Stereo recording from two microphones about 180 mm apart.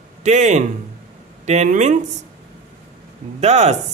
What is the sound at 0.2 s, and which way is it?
Speech, 40° right (ahead or behind).